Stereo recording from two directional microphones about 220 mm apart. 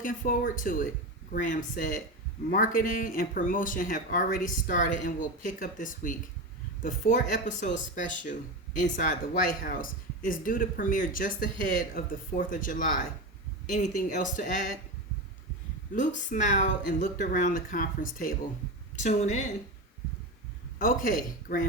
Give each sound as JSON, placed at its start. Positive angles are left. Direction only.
{"t": 0.0, "sound": "speech", "side_deg": 40}
{"t": 16.0, "sound": "speech", "side_deg": 35}
{"t": 20.7, "sound": "speech", "side_deg": 40}